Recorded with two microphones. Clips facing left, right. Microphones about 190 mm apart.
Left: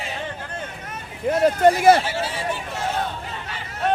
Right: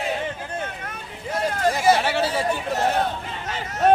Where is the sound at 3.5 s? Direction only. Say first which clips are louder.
Right 6 dB; 45° right (ahead or behind).